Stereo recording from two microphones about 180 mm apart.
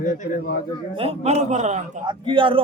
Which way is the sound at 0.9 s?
35° right (ahead or behind).